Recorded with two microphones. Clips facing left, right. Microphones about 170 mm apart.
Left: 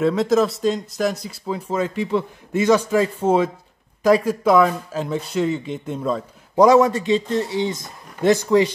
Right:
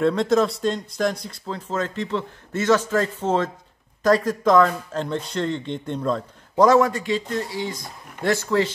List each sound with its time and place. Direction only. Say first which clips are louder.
0.0 s a man's voice: left 1 dB; 5° left (ahead or behind)